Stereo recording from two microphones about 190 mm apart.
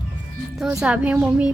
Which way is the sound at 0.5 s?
5° right (ahead or behind).